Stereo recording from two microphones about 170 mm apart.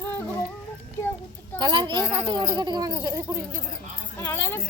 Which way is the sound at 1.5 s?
25° right (ahead or behind).